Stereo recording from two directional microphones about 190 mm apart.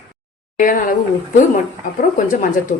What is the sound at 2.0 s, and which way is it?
Speech, 45° left (ahead or behind).